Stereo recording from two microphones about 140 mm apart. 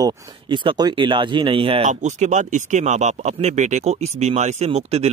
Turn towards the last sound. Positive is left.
turn(degrees=-50)  # may be behind; listen again after turning